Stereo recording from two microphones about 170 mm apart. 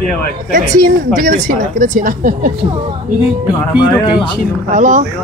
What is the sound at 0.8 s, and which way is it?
Speech, 55° right (ahead or behind).